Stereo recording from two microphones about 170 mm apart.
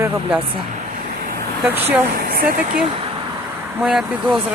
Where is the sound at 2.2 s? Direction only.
60° right (ahead or behind).